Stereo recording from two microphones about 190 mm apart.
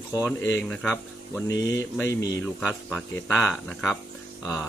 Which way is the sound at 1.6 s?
15° left (ahead or behind).